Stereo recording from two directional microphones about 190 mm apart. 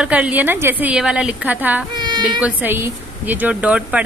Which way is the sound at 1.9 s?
25° right (ahead or behind).